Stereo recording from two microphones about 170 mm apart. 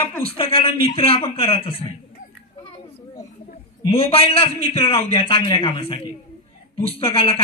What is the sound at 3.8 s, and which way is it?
A man's voice, 35° left (ahead or behind).